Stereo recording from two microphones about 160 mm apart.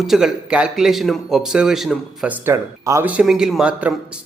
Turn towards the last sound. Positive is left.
turn(degrees=-5)  # may be behind; listen again after turning